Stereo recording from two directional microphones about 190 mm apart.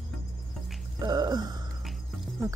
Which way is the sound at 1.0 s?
20° right (ahead or behind).